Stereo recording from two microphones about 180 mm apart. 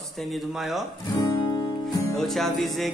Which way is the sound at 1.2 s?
25° left (ahead or behind).